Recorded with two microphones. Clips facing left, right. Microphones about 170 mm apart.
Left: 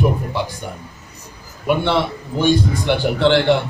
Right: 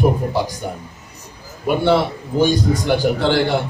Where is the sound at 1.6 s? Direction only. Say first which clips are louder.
Right 2 dB; 40° right (ahead or behind).